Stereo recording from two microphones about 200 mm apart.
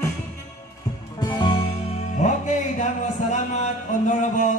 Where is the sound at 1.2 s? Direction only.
25° left (ahead or behind).